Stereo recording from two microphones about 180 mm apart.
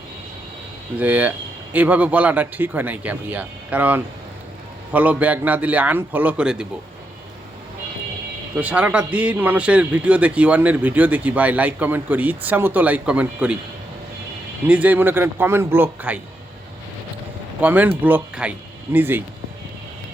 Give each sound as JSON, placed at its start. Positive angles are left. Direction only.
{"t": 0.9, "sound": "a man's voice", "side_deg": -10}
{"t": 8.5, "sound": "a man's voice", "side_deg": -10}
{"t": 14.7, "sound": "a man's voice", "side_deg": -10}
{"t": 17.6, "sound": "a man's voice", "side_deg": -10}